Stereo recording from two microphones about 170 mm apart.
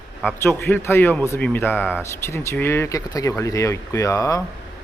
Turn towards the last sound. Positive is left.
turn(degrees=20)  # may be behind; listen again after turning